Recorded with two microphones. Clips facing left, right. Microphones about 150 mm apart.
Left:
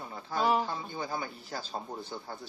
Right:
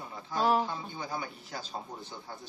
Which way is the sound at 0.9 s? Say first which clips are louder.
Left 2 dB; 30° left (ahead or behind).